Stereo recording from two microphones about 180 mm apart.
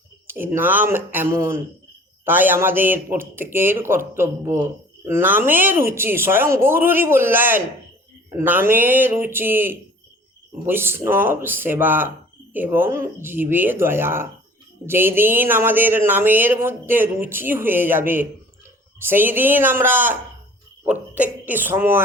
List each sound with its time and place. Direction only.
0.3 s a woman's voice: 10° right (ahead or behind)